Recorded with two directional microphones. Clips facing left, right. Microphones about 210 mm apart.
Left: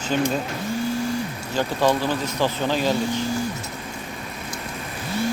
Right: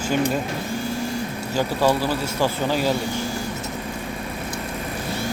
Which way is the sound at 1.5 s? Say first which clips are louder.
Right 1 dB; 10° right (ahead or behind).